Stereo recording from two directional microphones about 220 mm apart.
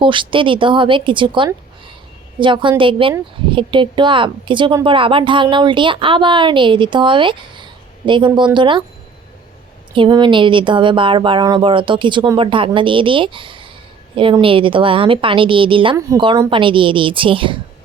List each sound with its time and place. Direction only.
0.0 s a woman's voice: 20° right (ahead or behind)
9.9 s a woman's voice: 20° right (ahead or behind)